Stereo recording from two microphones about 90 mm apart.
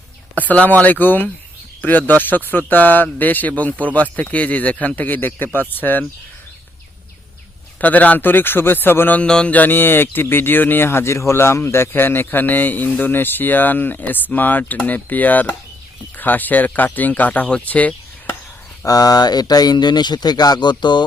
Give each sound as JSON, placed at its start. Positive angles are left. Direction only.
{"t": 0.3, "sound": "speech", "side_deg": 15}
{"t": 7.8, "sound": "speech", "side_deg": 20}
{"t": 18.9, "sound": "speech", "side_deg": 45}